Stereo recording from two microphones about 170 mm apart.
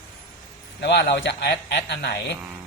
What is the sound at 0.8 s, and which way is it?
A man's voice, 90° left.